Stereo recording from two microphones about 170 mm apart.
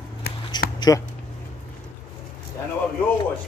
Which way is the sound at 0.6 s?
25° left (ahead or behind).